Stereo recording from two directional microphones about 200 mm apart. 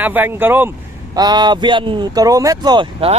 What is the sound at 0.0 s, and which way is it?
Speech, 10° right (ahead or behind).